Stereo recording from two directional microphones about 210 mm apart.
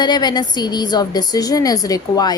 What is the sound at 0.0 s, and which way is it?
A woman's voice, 20° left (ahead or behind).